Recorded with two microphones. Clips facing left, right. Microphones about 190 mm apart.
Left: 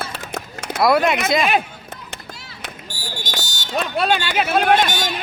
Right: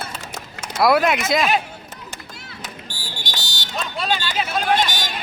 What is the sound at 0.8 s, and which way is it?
Speech, centre (ahead or behind).